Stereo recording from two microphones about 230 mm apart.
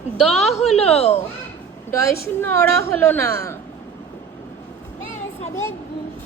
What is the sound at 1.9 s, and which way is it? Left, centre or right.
A woman's voice, centre.